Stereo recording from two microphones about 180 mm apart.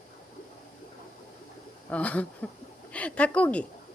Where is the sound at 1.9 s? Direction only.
10° left (ahead or behind).